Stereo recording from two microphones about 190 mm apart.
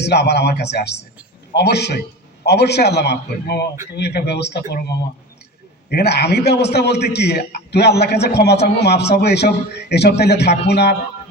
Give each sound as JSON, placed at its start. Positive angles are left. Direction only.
{"t": 0.0, "sound": "a man's voice", "side_deg": 60}